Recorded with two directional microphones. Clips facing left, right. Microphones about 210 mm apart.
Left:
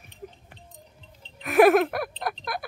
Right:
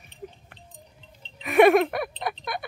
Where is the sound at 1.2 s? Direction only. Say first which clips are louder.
Even; centre (ahead or behind).